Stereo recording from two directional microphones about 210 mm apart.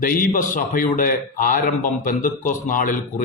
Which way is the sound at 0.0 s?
40° left (ahead or behind).